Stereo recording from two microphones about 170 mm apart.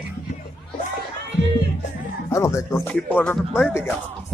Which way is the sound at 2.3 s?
20° left (ahead or behind).